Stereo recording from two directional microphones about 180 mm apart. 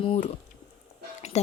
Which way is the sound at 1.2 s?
40° left (ahead or behind).